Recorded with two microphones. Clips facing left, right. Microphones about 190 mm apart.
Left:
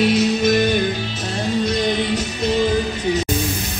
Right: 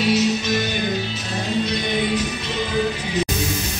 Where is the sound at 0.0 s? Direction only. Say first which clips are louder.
Left 3 dB; 55° left (ahead or behind).